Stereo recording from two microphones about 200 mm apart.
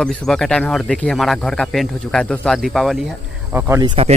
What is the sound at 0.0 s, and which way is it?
Speech, 5° left (ahead or behind).